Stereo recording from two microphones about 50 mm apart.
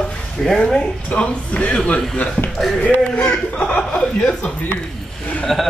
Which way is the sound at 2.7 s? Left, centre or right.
Left.